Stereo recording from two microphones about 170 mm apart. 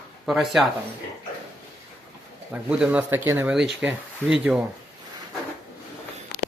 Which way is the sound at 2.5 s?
5° right (ahead or behind).